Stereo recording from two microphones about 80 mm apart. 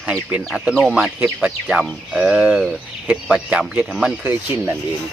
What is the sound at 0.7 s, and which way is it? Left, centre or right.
Speech, centre.